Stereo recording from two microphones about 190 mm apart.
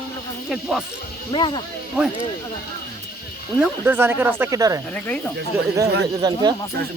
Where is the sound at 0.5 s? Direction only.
5° right (ahead or behind).